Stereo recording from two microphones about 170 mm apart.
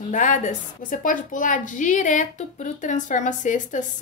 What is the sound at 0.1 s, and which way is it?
A woman's voice, 50° left (ahead or behind).